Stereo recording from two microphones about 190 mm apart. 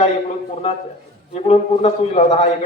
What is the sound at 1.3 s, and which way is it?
Speech, 30° left (ahead or behind).